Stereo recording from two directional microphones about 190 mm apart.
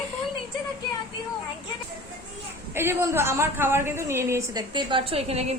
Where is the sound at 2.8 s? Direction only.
15° right (ahead or behind).